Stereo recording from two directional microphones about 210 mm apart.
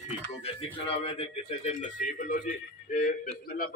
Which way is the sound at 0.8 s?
30° left (ahead or behind).